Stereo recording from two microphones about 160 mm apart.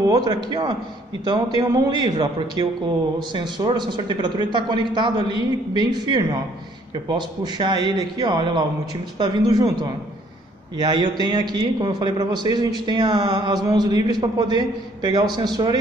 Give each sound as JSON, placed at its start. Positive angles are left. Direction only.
{"t": 0.0, "sound": "a man's voice", "side_deg": -25}